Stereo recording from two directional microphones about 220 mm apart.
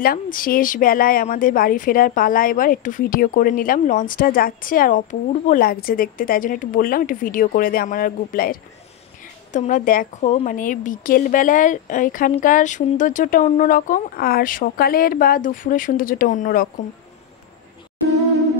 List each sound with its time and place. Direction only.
0.0 s a woman's voice: 40° left (ahead or behind)